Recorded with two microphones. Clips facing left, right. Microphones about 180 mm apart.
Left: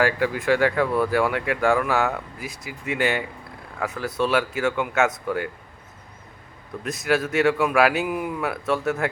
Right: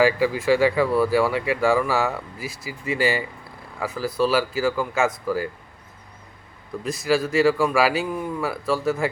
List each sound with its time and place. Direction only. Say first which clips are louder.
0.0 s speech: right 3 dB; 5° right (ahead or behind)
2.6 s speech: right 1 dB; 60° left (ahead or behind)
3.8 s speech: right 2 dB; centre (ahead or behind)
6.8 s speech: right 1 dB; centre (ahead or behind)